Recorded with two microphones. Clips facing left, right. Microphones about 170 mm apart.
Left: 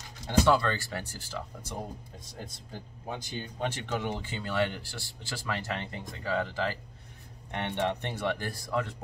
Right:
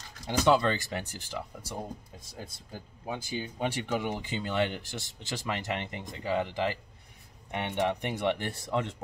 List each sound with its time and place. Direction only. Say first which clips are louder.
0.5 s speech: right 6 dB; 20° right (ahead or behind)